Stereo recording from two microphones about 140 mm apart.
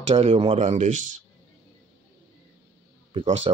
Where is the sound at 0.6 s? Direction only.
60° right (ahead or behind).